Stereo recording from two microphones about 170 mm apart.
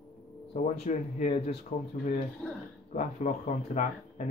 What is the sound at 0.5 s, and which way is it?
Speech, 45° left (ahead or behind).